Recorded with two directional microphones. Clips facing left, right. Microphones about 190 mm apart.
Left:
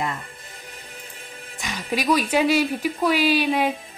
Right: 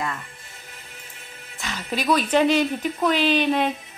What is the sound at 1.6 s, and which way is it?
Speech, 15° left (ahead or behind).